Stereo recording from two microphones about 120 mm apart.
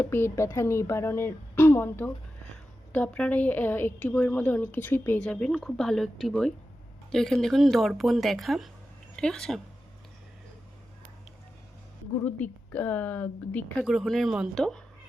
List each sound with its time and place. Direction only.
0.0 s a woman's voice: 20° left (ahead or behind)
5.2 s speech: 5° left (ahead or behind)
12.2 s a woman's voice: 15° left (ahead or behind)
13.8 s speech: 5° right (ahead or behind)